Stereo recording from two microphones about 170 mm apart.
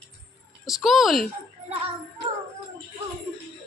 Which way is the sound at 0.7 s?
Centre (ahead or behind).